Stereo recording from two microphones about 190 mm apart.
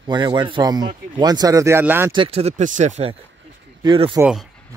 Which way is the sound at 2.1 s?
30° right (ahead or behind).